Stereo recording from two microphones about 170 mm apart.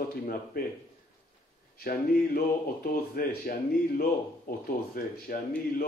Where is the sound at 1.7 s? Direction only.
60° left (ahead or behind).